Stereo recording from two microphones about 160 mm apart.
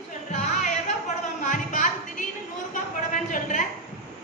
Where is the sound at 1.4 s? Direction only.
55° left (ahead or behind).